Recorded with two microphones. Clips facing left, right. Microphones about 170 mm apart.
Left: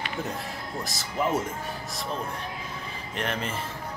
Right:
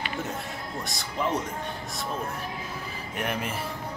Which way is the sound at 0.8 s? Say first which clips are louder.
Left 2 dB; centre (ahead or behind).